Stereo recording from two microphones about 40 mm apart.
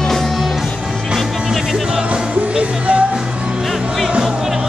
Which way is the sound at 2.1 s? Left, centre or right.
Right.